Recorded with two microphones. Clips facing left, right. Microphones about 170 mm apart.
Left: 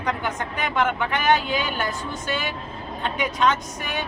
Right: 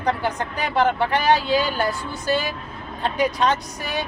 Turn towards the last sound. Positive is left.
turn(degrees=-35)  # may be behind; listen again after turning